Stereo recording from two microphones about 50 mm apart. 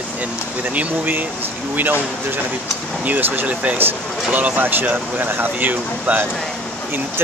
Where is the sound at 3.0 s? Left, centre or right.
Right.